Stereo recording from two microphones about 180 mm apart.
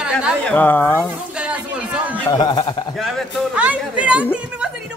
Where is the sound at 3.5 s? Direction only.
5° right (ahead or behind).